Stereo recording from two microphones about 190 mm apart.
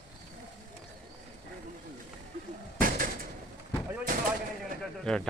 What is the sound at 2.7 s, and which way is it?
Bird, 45° right (ahead or behind).